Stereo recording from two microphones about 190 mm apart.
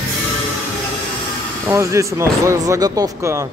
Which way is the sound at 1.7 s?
15° right (ahead or behind).